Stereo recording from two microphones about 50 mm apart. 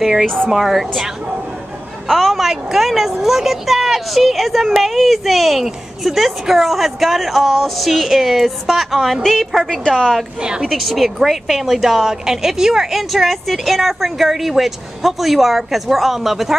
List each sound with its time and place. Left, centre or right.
0.0 s speech: centre
10.4 s a woman's voice: centre
10.7 s speech: centre